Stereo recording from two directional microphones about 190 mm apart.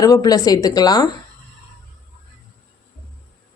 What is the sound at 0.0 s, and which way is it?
Speech, 20° left (ahead or behind).